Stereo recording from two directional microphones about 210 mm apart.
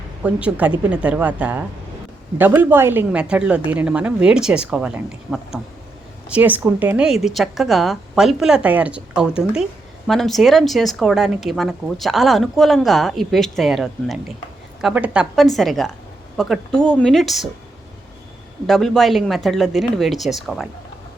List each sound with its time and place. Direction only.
0.2 s a woman's voice: 5° right (ahead or behind)
18.6 s speech: centre (ahead or behind)